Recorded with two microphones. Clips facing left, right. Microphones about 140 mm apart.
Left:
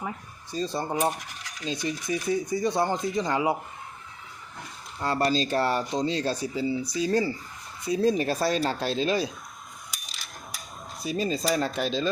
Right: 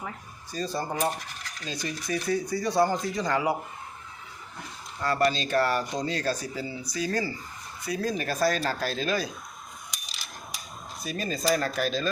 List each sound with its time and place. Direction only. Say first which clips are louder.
0.5 s coin: left 2 dB; 25° left (ahead or behind)
5.0 s coin: even; 25° left (ahead or behind)
11.0 s coin: left 2 dB; 25° left (ahead or behind)